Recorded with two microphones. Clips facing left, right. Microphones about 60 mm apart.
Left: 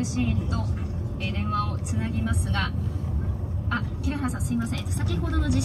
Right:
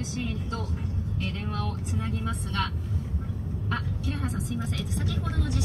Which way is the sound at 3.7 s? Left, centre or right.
Left.